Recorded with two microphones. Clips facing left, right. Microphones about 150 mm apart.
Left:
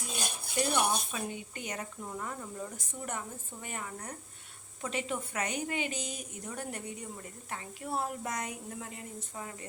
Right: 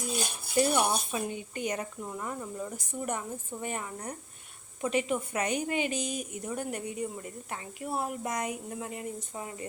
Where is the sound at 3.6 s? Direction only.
25° right (ahead or behind).